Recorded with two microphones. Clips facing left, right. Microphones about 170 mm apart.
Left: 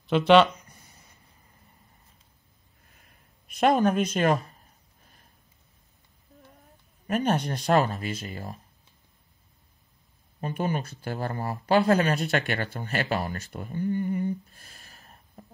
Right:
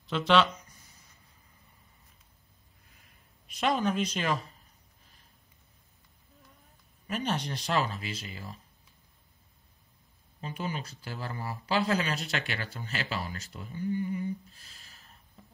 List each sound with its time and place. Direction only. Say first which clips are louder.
0.0 s a sound: left 7 dB; 60° left (ahead or behind)
3.4 s speech: left 7 dB; 50° left (ahead or behind)
7.1 s speech: left 7 dB; 50° left (ahead or behind)
10.4 s speech: left 7 dB; 50° left (ahead or behind)